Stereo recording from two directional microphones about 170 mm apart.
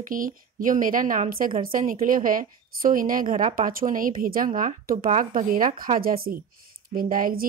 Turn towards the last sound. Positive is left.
turn(degrees=-55)  # may be behind; listen again after turning